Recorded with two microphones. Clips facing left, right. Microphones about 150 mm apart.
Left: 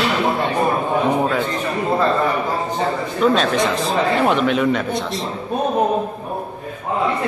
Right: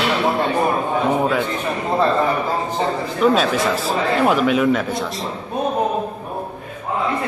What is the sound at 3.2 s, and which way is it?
A man's voice, 5° right (ahead or behind).